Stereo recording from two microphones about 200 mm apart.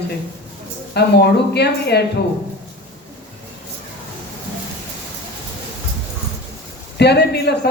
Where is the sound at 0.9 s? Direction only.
55° left (ahead or behind).